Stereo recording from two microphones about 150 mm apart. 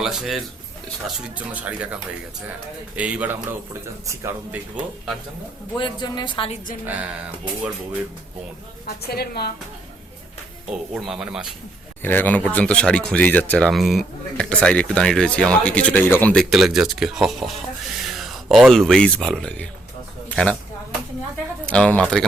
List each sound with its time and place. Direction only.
0.0 s speech: 5° right (ahead or behind)
2.9 s speech: 10° right (ahead or behind)
5.7 s speech: 30° left (ahead or behind)
6.8 s speech: 10° right (ahead or behind)
9.0 s a woman's voice: 90° left
10.7 s speech: 5° right (ahead or behind)
12.0 s speech: 10° left (ahead or behind)
16.3 s speech: centre (ahead or behind)
17.9 s a sound: centre (ahead or behind)
18.7 s speech: 5° left (ahead or behind)
21.7 s speech: 5° left (ahead or behind)